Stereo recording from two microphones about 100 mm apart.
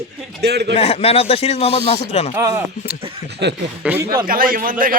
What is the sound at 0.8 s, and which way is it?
Speech, 80° left.